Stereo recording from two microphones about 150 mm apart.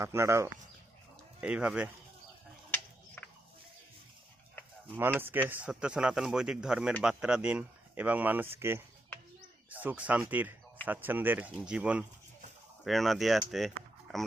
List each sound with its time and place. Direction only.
0.0 s speech: 20° right (ahead or behind)
1.4 s speech: 5° right (ahead or behind)
3.2 s music: 10° left (ahead or behind)
4.9 s speech: 15° right (ahead or behind)